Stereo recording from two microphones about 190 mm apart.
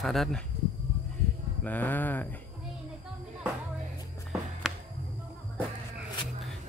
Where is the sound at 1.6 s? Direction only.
10° left (ahead or behind).